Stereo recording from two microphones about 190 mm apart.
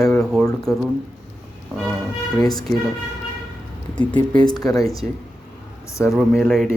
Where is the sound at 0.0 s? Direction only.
5° left (ahead or behind).